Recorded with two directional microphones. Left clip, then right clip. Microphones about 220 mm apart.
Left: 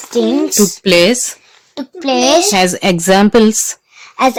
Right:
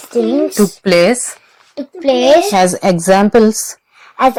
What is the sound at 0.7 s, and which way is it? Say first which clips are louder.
Speech: left 1 dB; 15° left (ahead or behind).